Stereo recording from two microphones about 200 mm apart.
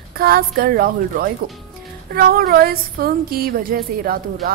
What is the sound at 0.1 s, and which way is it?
Speech, 50° right (ahead or behind).